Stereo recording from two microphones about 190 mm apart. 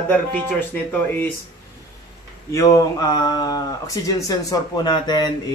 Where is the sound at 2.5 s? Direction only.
20° left (ahead or behind).